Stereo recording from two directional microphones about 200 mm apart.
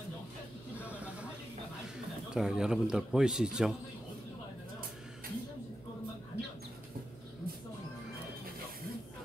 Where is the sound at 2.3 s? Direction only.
5° right (ahead or behind).